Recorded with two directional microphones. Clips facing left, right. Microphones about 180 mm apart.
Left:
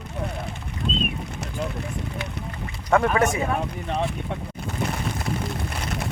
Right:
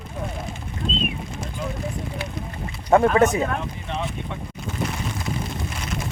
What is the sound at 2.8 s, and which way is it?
Speech, 30° right (ahead or behind).